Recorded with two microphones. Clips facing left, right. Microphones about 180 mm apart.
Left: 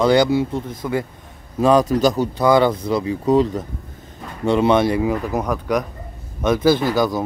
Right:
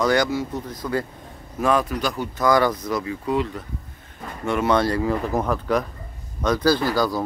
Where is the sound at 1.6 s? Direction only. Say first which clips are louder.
Left 7 dB; 35° left (ahead or behind).